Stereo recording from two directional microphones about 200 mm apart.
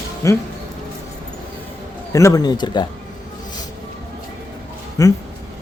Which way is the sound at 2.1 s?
15° left (ahead or behind).